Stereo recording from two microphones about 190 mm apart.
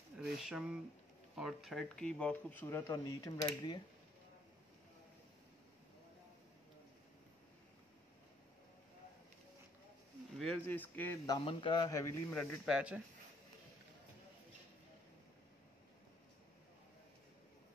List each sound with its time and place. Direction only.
0.2 s speech: centre (ahead or behind)
2.6 s speech: 15° left (ahead or behind)
10.4 s speech: 5° left (ahead or behind)
11.4 s speech: 25° left (ahead or behind)
12.6 s speech: 5° right (ahead or behind)